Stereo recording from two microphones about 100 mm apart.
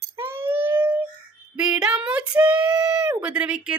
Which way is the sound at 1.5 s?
10° right (ahead or behind).